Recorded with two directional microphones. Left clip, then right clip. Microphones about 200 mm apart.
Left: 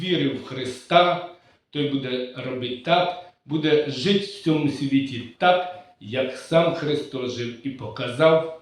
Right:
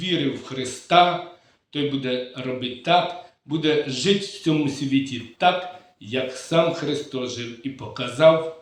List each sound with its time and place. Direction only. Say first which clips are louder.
0.0 s speech: even; 40° right (ahead or behind)